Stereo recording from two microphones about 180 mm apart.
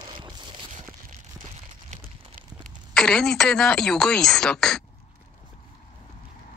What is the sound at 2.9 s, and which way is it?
Speech, 5° left (ahead or behind).